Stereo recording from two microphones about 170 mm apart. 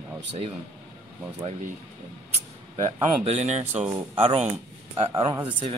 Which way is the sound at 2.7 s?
40° right (ahead or behind).